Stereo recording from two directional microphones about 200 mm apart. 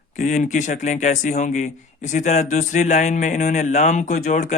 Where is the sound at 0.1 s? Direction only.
40° left (ahead or behind).